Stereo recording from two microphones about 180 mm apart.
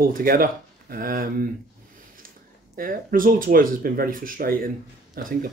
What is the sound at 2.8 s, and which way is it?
Speech, 50° right (ahead or behind).